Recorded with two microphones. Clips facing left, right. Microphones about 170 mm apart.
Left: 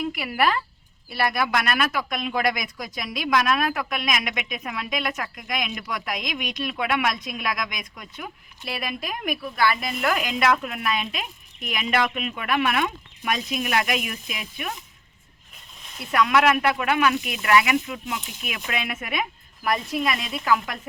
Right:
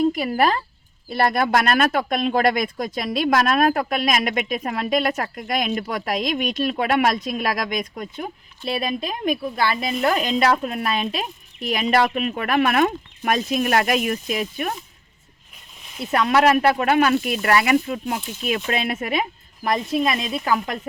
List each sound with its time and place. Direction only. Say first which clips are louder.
0.0 s speech: right 5 dB; 40° right (ahead or behind)
8.1 s speech: right 6 dB; 30° right (ahead or behind)
16.1 s speech: right 3 dB; 35° right (ahead or behind)